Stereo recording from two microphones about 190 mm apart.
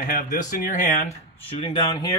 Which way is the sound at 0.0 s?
45° left (ahead or behind).